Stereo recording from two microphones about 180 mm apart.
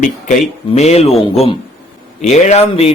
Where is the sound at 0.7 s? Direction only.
35° left (ahead or behind).